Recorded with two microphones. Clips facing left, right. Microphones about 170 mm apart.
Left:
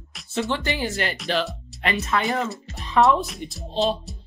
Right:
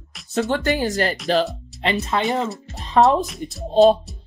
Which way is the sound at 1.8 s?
30° right (ahead or behind).